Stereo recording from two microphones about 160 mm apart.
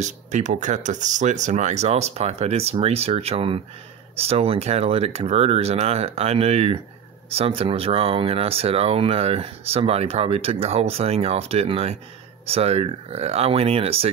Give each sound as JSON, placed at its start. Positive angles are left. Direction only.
{"t": 0.0, "sound": "speech", "side_deg": -50}